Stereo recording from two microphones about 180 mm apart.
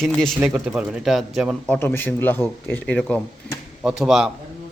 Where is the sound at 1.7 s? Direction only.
10° left (ahead or behind).